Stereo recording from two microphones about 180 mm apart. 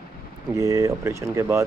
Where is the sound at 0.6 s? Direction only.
15° right (ahead or behind).